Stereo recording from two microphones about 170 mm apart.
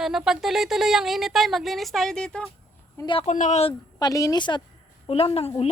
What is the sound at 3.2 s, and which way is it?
Speech, 45° left (ahead or behind).